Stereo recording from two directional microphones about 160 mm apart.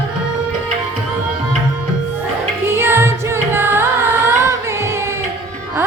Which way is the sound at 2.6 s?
15° right (ahead or behind).